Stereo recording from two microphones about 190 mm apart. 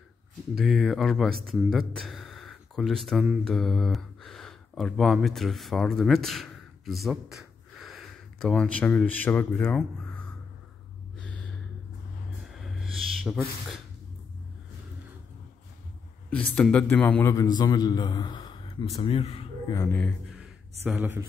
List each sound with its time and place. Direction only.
0.6 s speech: centre (ahead or behind)
11.1 s gasp: 5° left (ahead or behind)
12.4 s a sound: centre (ahead or behind)
16.3 s a man's voice: 5° left (ahead or behind); by 19.4 s 30° left (ahead or behind)
19.7 s speech: 15° left (ahead or behind)
20.8 s speech: 10° right (ahead or behind)